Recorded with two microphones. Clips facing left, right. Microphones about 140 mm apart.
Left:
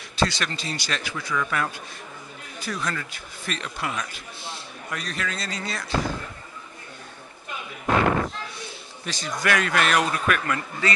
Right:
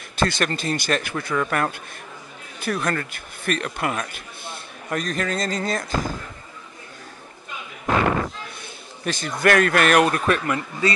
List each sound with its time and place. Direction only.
0.1 s a man's voice: 50° right (ahead or behind)
4.9 s a man's voice: 45° right (ahead or behind)
8.5 s speech: 55° right (ahead or behind)
10.2 s speech: 25° right (ahead or behind)